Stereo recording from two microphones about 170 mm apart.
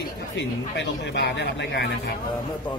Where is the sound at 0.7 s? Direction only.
90° left.